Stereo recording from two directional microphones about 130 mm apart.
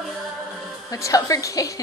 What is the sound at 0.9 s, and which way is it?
Speech, 25° left (ahead or behind).